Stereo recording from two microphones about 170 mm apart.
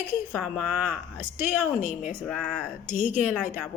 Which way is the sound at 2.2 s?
5° left (ahead or behind).